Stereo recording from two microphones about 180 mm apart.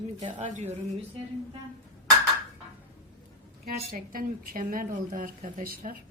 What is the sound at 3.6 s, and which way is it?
A woman's voice, 55° right (ahead or behind).